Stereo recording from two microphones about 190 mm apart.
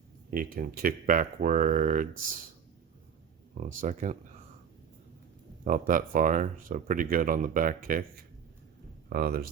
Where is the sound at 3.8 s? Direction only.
40° right (ahead or behind).